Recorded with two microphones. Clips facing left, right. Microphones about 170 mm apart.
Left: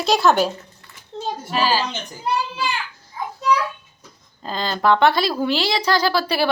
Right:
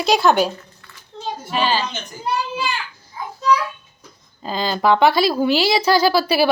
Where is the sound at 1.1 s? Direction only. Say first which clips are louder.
Left 4 dB; 35° left (ahead or behind).